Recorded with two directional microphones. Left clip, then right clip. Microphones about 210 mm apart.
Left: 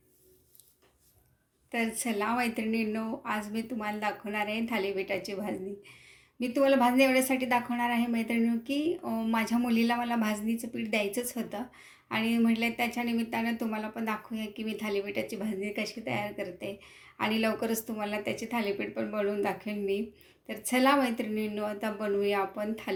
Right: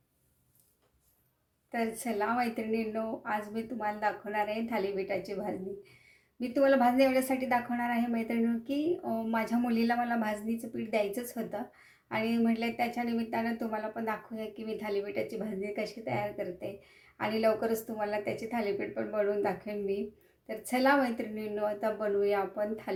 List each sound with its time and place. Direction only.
1.7 s a woman's voice: centre (ahead or behind)